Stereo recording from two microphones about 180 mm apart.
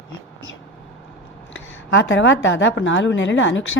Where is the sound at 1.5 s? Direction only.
90° left.